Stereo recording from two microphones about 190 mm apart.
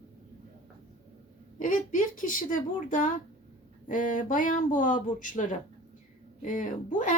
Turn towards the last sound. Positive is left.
turn(degrees=40)  # may be behind; listen again after turning